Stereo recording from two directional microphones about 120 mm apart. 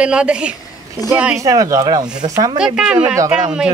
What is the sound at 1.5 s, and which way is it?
Speech, 30° right (ahead or behind).